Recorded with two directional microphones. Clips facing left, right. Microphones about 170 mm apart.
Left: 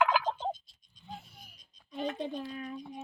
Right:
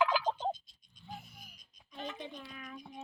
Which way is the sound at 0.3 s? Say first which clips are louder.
Even; 5° left (ahead or behind).